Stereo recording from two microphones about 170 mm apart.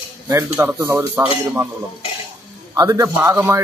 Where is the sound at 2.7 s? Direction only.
20° right (ahead or behind).